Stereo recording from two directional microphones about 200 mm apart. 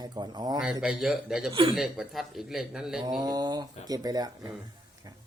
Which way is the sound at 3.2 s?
20° right (ahead or behind).